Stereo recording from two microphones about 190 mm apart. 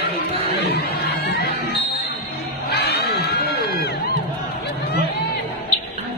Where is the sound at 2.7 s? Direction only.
60° left (ahead or behind).